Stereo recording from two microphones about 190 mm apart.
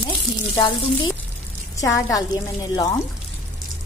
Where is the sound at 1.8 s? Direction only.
15° left (ahead or behind).